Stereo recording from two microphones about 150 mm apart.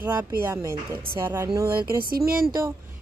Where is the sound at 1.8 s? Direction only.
80° right.